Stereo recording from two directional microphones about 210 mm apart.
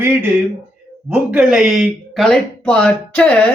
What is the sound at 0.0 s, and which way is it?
Speech, 10° right (ahead or behind).